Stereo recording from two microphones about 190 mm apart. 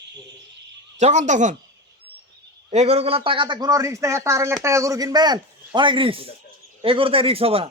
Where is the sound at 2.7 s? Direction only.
35° right (ahead or behind).